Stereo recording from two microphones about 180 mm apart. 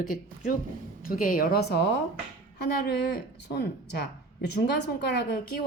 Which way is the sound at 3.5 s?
65° left (ahead or behind).